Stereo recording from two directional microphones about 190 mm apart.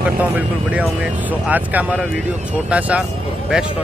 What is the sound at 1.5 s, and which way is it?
Speech, 10° right (ahead or behind).